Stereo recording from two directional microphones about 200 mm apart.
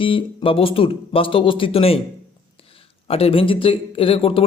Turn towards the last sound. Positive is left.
turn(degrees=30)  # may be behind; listen again after turning